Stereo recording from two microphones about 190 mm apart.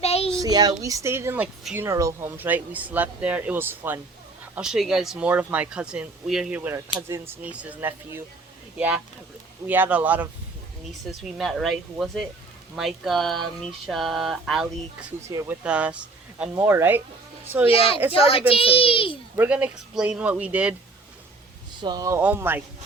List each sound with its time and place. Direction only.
0.0 s child singing: 30° left (ahead or behind)
0.3 s speech: 20° right (ahead or behind)
9.6 s speech: 10° right (ahead or behind)
11.2 s a sound: centre (ahead or behind)
15.3 s speech: 15° right (ahead or behind)
15.6 s speech: 5° right (ahead or behind)
17.7 s a child's voice: 30° left (ahead or behind)
19.4 s speech: 5° right (ahead or behind)
21.8 s speech: 20° right (ahead or behind)